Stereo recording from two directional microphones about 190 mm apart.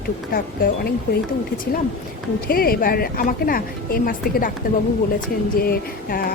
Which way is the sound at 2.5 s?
50° left (ahead or behind).